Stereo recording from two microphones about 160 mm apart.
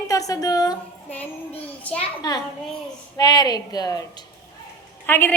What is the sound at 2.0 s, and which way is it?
A woman's voice, 25° left (ahead or behind).